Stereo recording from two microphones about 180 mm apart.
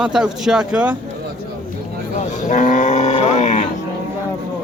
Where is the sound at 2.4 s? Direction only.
45° left (ahead or behind).